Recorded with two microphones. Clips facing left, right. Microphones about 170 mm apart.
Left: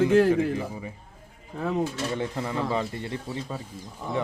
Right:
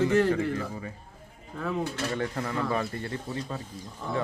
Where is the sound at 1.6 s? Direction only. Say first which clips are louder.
Left 4 dB; 35° left (ahead or behind).